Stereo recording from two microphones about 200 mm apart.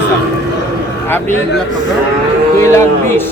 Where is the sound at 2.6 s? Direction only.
15° left (ahead or behind).